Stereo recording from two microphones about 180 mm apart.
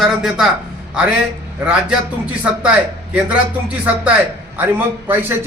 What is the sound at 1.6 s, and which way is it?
Speech, 5° right (ahead or behind).